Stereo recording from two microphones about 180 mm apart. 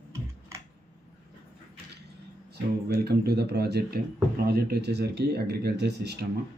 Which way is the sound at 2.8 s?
60° right (ahead or behind).